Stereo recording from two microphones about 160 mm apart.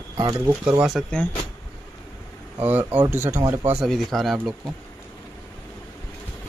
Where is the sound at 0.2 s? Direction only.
25° right (ahead or behind).